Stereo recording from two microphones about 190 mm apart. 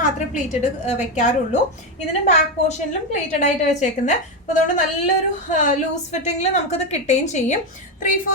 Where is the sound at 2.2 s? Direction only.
40° left (ahead or behind).